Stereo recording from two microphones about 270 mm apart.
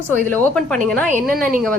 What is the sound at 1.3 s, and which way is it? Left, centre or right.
Speech, right.